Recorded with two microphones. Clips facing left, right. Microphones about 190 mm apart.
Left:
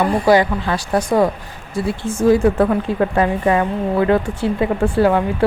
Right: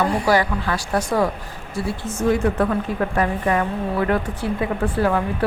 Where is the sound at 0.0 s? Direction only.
20° left (ahead or behind).